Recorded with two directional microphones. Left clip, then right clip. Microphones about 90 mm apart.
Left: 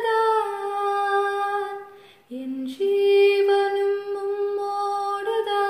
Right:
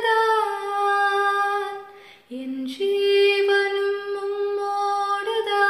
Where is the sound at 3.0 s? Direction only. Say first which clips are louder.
Left 1 dB; 35° left (ahead or behind).